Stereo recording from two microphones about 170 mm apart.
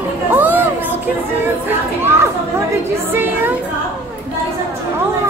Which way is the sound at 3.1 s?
10° right (ahead or behind).